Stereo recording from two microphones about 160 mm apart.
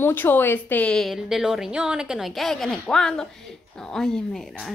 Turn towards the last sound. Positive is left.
turn(degrees=0)  # may be behind; listen again after turning